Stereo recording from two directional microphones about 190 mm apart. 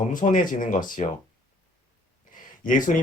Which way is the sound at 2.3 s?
45° left (ahead or behind).